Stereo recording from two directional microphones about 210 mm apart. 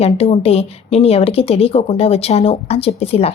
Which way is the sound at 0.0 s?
30° left (ahead or behind).